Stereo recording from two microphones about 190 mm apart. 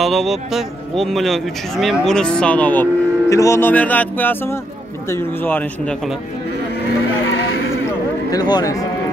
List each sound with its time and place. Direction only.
0.0 s a man's voice: centre (ahead or behind)
8.3 s speech: 20° left (ahead or behind)